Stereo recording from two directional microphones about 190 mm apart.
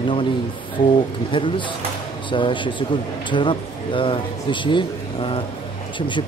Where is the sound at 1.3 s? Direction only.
25° left (ahead or behind).